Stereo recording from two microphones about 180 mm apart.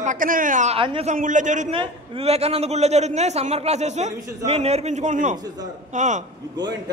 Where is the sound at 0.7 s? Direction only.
30° right (ahead or behind).